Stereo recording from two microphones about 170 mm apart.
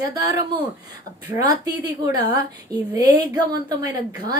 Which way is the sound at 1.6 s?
20° right (ahead or behind).